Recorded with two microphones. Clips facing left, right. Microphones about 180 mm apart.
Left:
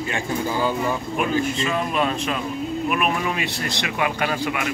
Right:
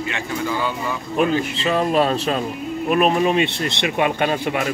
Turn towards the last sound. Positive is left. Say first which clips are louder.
# right 3 dB
turn(degrees=-30)  # may be behind; listen again after turning